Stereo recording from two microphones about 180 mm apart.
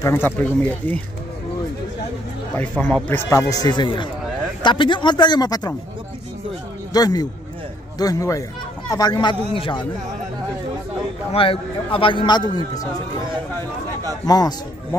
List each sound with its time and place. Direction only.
0.0 s speech: 15° left (ahead or behind)
2.8 s a man's voice: 10° left (ahead or behind)
6.9 s a man's voice: 20° left (ahead or behind)
11.3 s a man's voice: 30° left (ahead or behind)
14.2 s a man's voice: 20° left (ahead or behind)